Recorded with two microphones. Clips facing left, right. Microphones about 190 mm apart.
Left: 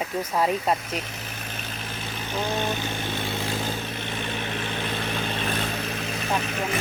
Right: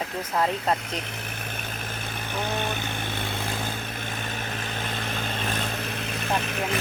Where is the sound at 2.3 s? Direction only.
55° right (ahead or behind).